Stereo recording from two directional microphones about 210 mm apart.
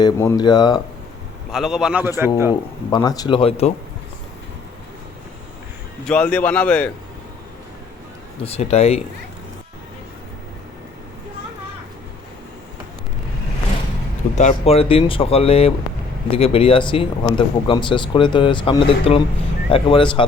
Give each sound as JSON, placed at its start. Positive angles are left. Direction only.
{"t": 0.0, "sound": "speech", "side_deg": 15}
{"t": 1.5, "sound": "a man's voice", "side_deg": 0}
{"t": 2.9, "sound": "speech", "side_deg": 20}
{"t": 6.1, "sound": "a man's voice", "side_deg": 5}
{"t": 8.4, "sound": "speech", "side_deg": 30}
{"t": 14.3, "sound": "speech", "side_deg": 30}